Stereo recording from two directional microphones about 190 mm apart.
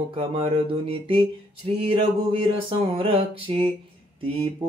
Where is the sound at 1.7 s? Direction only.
30° right (ahead or behind).